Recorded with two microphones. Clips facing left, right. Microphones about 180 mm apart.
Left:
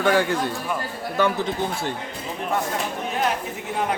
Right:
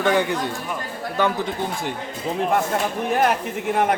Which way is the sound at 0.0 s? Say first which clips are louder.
Even; 20° right (ahead or behind).